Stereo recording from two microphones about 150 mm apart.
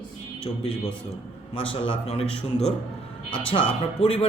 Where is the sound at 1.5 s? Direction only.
40° left (ahead or behind).